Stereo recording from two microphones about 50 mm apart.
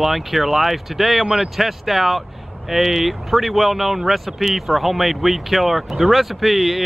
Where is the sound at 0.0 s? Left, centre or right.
Centre.